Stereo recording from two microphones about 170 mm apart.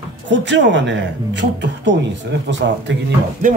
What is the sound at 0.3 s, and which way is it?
Speech, 90° right.